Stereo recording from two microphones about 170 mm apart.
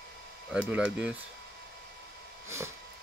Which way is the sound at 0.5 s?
5° right (ahead or behind).